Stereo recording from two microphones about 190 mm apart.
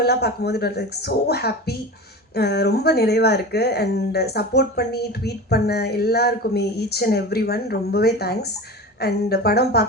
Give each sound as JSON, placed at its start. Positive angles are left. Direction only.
{"t": 0.0, "sound": "speech", "side_deg": 60}